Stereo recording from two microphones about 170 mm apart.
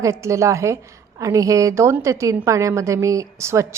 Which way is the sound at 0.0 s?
15° right (ahead or behind).